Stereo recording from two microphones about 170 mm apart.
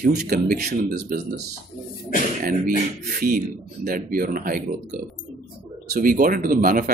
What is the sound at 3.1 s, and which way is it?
Speech, 60° right (ahead or behind).